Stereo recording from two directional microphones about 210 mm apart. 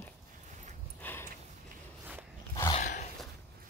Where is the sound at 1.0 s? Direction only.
10° left (ahead or behind).